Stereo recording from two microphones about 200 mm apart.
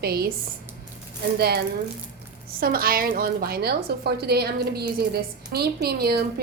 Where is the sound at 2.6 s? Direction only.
45° right (ahead or behind).